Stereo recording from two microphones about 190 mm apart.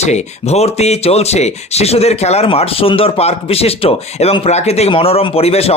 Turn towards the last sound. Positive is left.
turn(degrees=30)  # may be behind; listen again after turning